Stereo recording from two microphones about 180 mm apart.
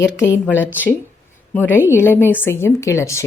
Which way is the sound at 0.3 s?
10° right (ahead or behind).